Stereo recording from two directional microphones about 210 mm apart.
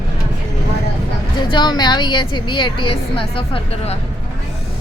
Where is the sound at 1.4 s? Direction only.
20° left (ahead or behind).